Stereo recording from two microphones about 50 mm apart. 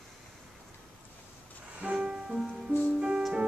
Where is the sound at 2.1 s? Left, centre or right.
Centre.